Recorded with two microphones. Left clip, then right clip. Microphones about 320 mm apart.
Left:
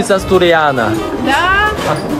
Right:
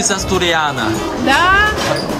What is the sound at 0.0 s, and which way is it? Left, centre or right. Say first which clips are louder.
Speech: left 5 dB; centre.